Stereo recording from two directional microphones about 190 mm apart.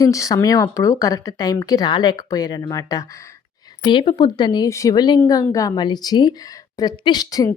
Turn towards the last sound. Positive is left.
turn(degrees=20)  # may be behind; listen again after turning